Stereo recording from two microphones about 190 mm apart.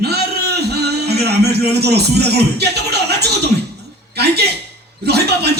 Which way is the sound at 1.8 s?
60° right (ahead or behind).